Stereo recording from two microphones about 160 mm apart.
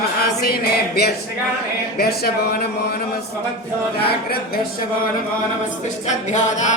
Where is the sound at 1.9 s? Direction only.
80° left.